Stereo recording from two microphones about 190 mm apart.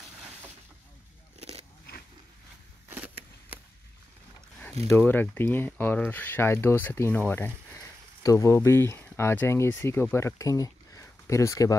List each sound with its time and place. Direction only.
1.4 s biting: 30° right (ahead or behind)
2.9 s a sound: 10° right (ahead or behind)
4.8 s speech: 10° left (ahead or behind)